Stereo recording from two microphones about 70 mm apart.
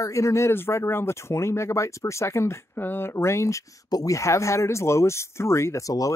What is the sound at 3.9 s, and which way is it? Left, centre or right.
Speech, left.